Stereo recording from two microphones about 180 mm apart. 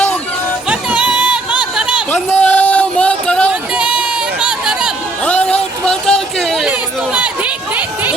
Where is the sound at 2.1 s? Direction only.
10° left (ahead or behind).